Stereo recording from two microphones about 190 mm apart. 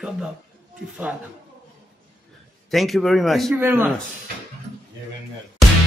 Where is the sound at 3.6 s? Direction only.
10° right (ahead or behind).